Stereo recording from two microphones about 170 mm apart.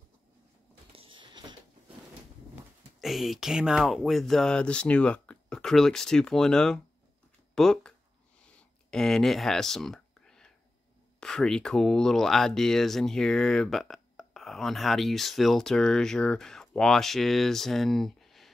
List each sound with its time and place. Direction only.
0.9 s a sound: 30° right (ahead or behind)
3.0 s speech: centre (ahead or behind)
8.9 s speech: 5° left (ahead or behind)